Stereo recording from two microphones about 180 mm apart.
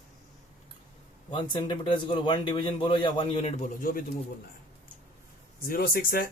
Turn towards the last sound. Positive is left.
turn(degrees=55)  # may be behind; listen again after turning